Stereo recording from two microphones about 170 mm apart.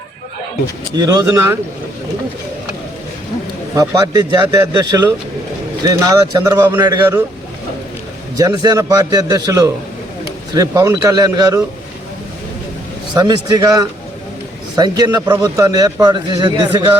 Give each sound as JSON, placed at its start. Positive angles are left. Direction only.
{"t": 0.9, "sound": "a man's voice", "side_deg": -20}
{"t": 3.8, "sound": "a man's voice", "side_deg": -20}
{"t": 8.4, "sound": "a man's voice", "side_deg": -20}
{"t": 13.1, "sound": "a man's voice", "side_deg": -20}